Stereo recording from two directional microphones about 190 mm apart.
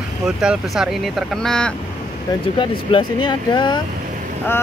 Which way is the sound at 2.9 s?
25° left (ahead or behind).